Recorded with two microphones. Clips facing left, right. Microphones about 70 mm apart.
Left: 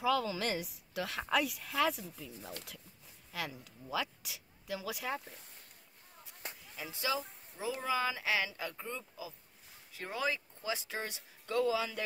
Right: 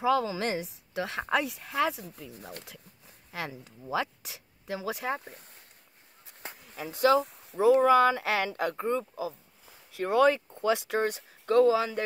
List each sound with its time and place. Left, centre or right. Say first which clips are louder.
0.0 s a woman's voice: right 6 dB; right
2.3 s speech: right 3 dB; right
3.3 s speech: right 4 dB; right
6.2 s a sound: right 4 dB; right
7.8 s speech: right 13 dB; right
8.9 s speech: right 13 dB; right
9.9 s speech: right 13 dB; right